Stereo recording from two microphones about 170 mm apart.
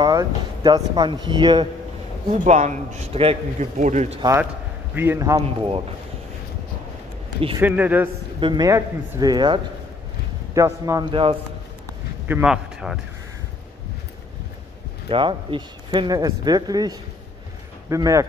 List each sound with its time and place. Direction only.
0.0 s speech: 25° right (ahead or behind)
2.3 s a man's voice: 45° right (ahead or behind)
4.9 s a man's voice: 15° right (ahead or behind)
7.3 s speech: 35° right (ahead or behind)
7.6 s a man's voice: 10° right (ahead or behind)
8.4 s speech: 25° right (ahead or behind)
11.1 s speech: 30° right (ahead or behind)
12.3 s a man's voice: 5° right (ahead or behind)
15.0 s speech: 30° right (ahead or behind)